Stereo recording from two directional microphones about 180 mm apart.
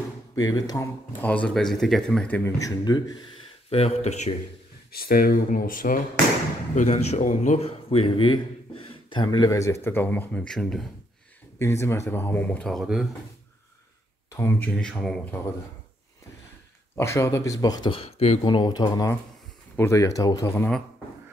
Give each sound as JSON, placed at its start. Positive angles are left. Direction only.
{"t": 0.4, "sound": "speech", "side_deg": 20}
{"t": 1.2, "sound": "speech", "side_deg": 5}
{"t": 3.7, "sound": "speech", "side_deg": 35}
{"t": 4.9, "sound": "speech", "side_deg": 55}
{"t": 11.5, "sound": "speech", "side_deg": 15}
{"t": 14.3, "sound": "speech", "side_deg": 10}
{"t": 16.9, "sound": "speech", "side_deg": 15}